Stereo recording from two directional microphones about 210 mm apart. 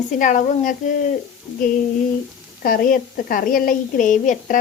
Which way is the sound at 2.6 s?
45° left (ahead or behind).